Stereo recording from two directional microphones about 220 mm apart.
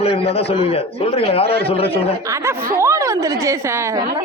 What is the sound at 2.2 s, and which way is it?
Speech, 10° right (ahead or behind).